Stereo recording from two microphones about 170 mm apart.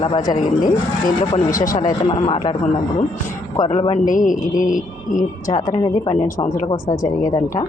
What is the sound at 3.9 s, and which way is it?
Speech, 50° left (ahead or behind).